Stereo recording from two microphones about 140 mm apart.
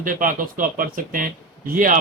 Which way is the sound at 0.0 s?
75° right (ahead or behind).